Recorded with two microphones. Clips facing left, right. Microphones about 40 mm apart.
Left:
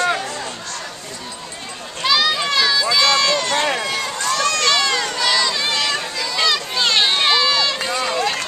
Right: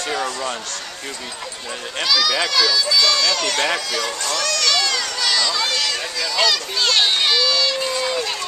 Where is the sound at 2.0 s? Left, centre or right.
Left.